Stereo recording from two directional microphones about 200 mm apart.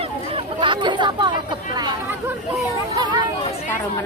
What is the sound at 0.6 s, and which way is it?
Chatter, 25° right (ahead or behind).